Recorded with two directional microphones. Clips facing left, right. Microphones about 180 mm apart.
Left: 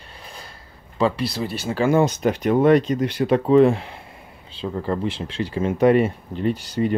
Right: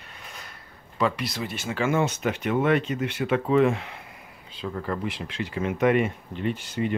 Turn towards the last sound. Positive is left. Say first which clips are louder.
# left 5 dB
turn(degrees=35)  # may be behind; listen again after turning